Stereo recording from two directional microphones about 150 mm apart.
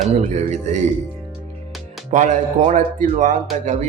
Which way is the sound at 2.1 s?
55° right (ahead or behind).